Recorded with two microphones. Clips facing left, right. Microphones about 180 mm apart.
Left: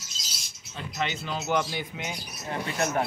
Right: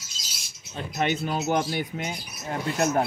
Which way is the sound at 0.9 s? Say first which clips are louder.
Right 5 dB; 50° right (ahead or behind).